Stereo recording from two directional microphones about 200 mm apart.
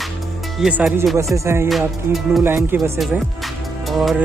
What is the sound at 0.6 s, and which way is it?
Speech, 5° right (ahead or behind).